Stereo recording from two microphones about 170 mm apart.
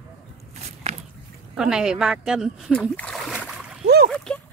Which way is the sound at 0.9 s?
40° right (ahead or behind).